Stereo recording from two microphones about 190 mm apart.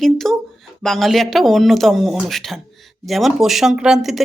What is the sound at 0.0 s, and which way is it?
Speech, centre (ahead or behind).